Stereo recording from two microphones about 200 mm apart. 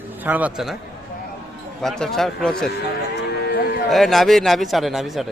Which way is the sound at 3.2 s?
55° left (ahead or behind).